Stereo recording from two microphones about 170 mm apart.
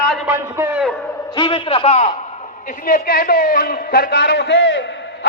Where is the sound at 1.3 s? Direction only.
30° left (ahead or behind).